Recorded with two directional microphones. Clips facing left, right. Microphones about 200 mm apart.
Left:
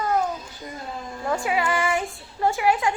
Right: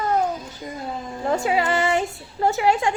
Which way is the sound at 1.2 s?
30° right (ahead or behind).